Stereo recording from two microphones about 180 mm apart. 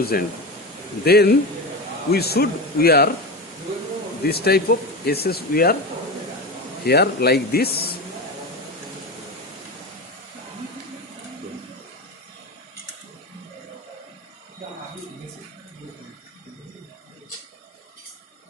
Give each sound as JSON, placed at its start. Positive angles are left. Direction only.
{"t": 0.0, "sound": "speech", "side_deg": 60}
{"t": 4.2, "sound": "speech", "side_deg": 60}
{"t": 6.8, "sound": "speech", "side_deg": 65}